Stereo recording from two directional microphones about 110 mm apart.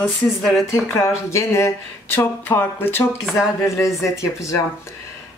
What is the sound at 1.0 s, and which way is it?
Speech, 25° left (ahead or behind).